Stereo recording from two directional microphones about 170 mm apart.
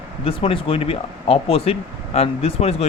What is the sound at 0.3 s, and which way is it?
Speech, 30° left (ahead or behind).